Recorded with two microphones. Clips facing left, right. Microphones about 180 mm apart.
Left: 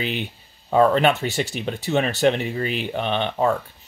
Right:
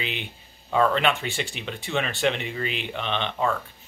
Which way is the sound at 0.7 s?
40° left (ahead or behind).